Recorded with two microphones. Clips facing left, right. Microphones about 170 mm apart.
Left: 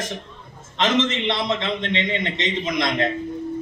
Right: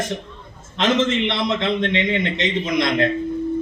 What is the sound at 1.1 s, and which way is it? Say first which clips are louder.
A man's voice: right 3 dB; 60° right (ahead or behind).